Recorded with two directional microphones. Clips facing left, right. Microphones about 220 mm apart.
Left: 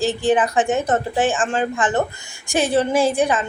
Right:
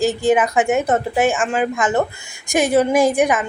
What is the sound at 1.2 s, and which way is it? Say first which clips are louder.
A woman's voice: right 3 dB; 10° right (ahead or behind).